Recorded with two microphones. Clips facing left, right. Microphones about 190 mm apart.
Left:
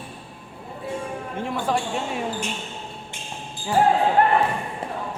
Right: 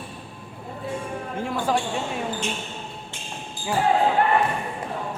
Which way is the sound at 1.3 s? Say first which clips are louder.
Even; centre (ahead or behind).